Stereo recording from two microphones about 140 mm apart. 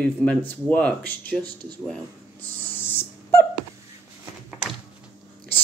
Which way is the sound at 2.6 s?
15° left (ahead or behind).